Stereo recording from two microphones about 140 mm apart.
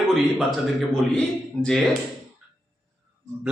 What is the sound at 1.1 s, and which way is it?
Speech, 5° left (ahead or behind).